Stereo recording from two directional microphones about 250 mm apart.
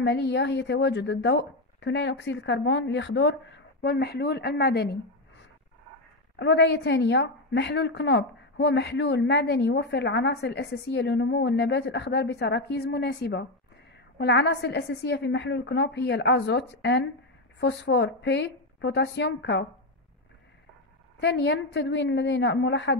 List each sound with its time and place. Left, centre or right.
0.0 s a woman's voice: left
6.3 s a woman's voice: left
21.2 s a woman's voice: left